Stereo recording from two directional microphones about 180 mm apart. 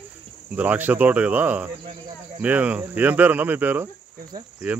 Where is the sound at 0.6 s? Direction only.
10° right (ahead or behind).